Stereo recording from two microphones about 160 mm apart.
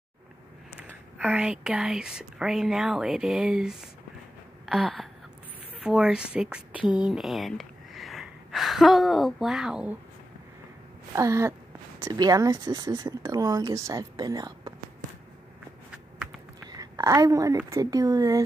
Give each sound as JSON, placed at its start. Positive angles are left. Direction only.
{"t": 1.1, "sound": "speech", "side_deg": -10}
{"t": 11.1, "sound": "speech", "side_deg": -20}
{"t": 16.6, "sound": "a woman's voice", "side_deg": -25}